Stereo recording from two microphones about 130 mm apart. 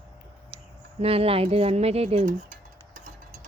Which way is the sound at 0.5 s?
45° right (ahead or behind).